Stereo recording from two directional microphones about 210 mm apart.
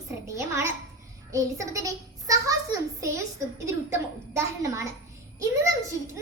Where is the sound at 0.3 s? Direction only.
15° right (ahead or behind).